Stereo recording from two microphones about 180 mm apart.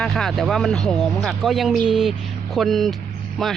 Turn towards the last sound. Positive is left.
turn(degrees=0)  # may be behind; listen again after turning